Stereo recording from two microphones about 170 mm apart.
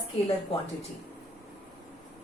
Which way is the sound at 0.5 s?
35° left (ahead or behind).